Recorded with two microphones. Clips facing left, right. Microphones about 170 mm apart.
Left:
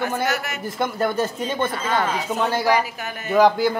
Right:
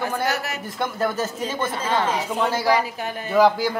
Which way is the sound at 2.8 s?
30° right (ahead or behind).